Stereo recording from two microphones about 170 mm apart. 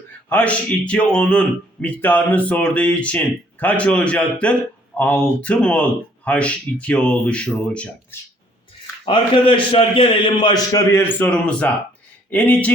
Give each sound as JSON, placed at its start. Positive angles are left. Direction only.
{"t": 0.3, "sound": "a man's voice", "side_deg": 10}
{"t": 9.0, "sound": "a man's voice", "side_deg": 30}
{"t": 11.2, "sound": "a man's voice", "side_deg": 5}